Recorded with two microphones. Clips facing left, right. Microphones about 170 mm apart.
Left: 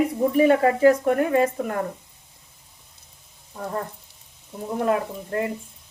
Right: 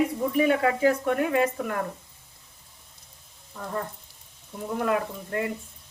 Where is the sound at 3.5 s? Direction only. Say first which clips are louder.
Left 4 dB; 35° left (ahead or behind).